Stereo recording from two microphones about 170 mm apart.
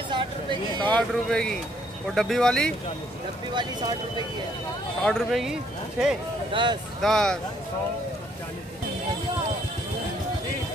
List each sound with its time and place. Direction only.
0.1 s speech: 30° right (ahead or behind)
0.8 s speech: 5° left (ahead or behind)
5.0 s speech: centre (ahead or behind)
6.5 s speech: 25° right (ahead or behind)
7.0 s speech: 5° left (ahead or behind)